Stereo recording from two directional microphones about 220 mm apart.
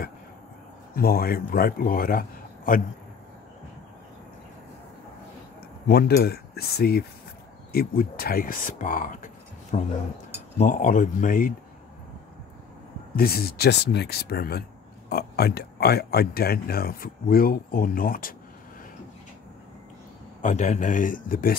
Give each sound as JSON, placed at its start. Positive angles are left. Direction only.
{"t": 0.9, "sound": "a man's voice", "side_deg": 45}
{"t": 5.9, "sound": "a man's voice", "side_deg": 45}
{"t": 13.1, "sound": "speech", "side_deg": 45}
{"t": 20.4, "sound": "a man's voice", "side_deg": 35}